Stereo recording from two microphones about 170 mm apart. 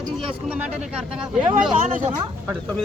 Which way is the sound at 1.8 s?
50° right (ahead or behind).